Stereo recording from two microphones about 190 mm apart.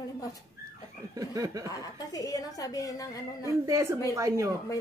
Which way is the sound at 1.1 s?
20° right (ahead or behind).